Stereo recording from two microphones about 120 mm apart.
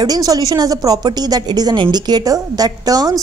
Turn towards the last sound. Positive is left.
turn(degrees=-30)  # may be behind; listen again after turning